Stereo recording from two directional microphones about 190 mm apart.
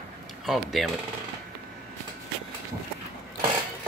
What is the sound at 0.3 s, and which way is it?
Speech, centre (ahead or behind).